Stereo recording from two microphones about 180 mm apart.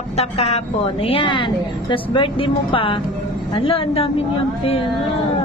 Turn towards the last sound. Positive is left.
turn(degrees=30)  # may be behind; listen again after turning